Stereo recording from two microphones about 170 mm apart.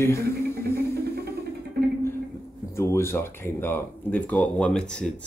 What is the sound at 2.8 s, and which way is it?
Speech, 15° left (ahead or behind).